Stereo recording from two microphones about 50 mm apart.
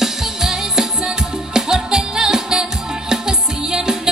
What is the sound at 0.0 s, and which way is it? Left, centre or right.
Music, centre.